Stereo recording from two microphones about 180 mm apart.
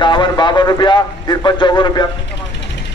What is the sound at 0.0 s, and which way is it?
A man's voice, 25° left (ahead or behind).